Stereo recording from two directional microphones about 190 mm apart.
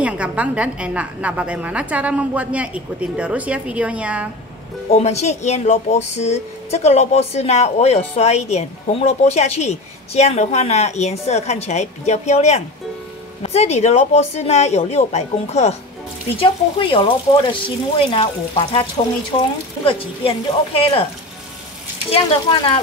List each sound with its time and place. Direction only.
0.0 s a woman's voice: 5° right (ahead or behind)
4.9 s speech: 35° left (ahead or behind)